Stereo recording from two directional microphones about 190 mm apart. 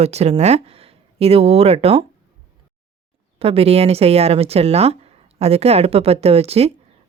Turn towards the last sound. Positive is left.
turn(degrees=-35)  # may be behind; listen again after turning